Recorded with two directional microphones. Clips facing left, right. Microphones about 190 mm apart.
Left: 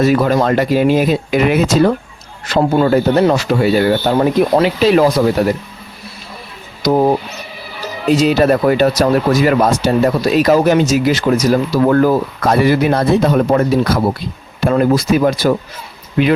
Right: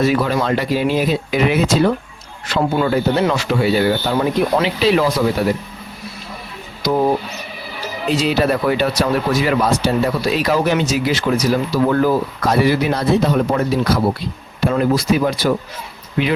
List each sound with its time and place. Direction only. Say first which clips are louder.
0.0 s speech: left 4 dB; 45° left (ahead or behind)
6.8 s speech: left 4 dB; 45° left (ahead or behind)